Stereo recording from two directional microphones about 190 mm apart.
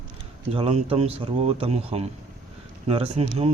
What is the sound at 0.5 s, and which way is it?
Speech, 30° right (ahead or behind).